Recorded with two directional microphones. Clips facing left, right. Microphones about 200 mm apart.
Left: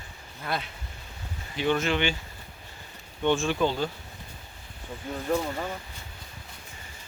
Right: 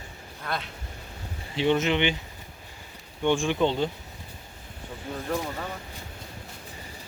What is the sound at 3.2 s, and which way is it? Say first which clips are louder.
Speech: right 1 dB; 15° right (ahead or behind).